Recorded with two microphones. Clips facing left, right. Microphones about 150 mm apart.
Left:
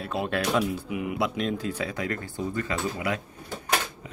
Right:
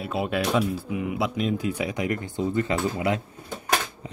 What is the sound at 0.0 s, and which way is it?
Speech, 5° right (ahead or behind).